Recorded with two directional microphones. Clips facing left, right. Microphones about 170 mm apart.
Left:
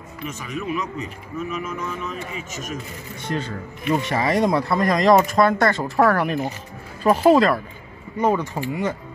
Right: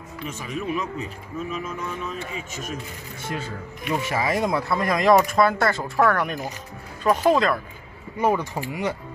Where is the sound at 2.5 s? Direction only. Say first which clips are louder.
Left 3 dB; 45° left (ahead or behind).